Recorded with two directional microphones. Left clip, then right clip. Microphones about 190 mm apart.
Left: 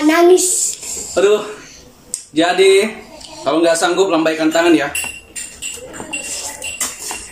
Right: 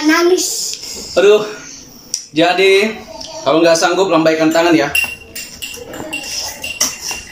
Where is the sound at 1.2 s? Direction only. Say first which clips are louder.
Right 3 dB; 5° right (ahead or behind).